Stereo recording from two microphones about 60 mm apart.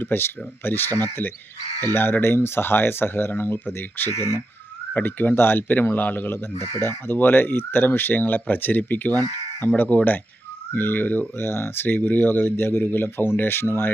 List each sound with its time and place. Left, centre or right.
0.0 s speech: left